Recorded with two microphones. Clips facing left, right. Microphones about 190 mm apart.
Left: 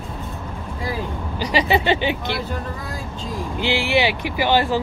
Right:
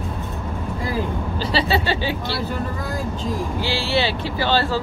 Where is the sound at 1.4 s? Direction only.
15° left (ahead or behind).